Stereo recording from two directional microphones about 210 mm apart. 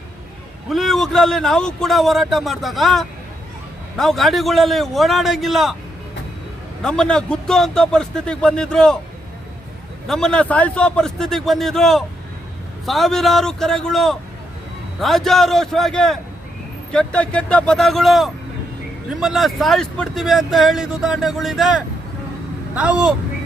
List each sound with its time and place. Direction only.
0.7 s speech: centre (ahead or behind)
6.8 s speech: 5° left (ahead or behind)
10.1 s speech: 5° left (ahead or behind)